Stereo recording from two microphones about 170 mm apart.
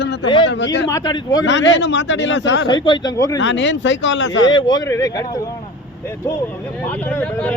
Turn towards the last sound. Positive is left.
turn(degrees=10)  # may be behind; listen again after turning